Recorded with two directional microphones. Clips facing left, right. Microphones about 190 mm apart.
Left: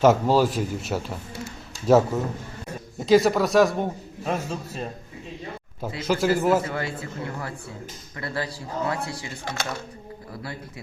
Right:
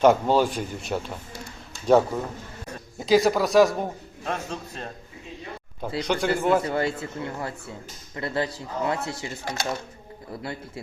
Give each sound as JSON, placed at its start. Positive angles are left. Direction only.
{"t": 0.0, "sound": "a man's voice", "side_deg": 0}
{"t": 6.0, "sound": "a man's voice", "side_deg": 5}
{"t": 6.7, "sound": "speech", "side_deg": -25}